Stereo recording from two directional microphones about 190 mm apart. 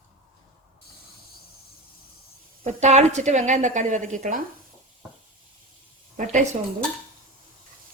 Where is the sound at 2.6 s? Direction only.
35° right (ahead or behind).